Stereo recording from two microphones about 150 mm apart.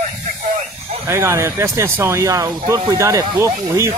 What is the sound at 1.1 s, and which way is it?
Speech, 20° right (ahead or behind).